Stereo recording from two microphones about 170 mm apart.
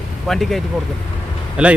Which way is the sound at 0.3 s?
Centre (ahead or behind).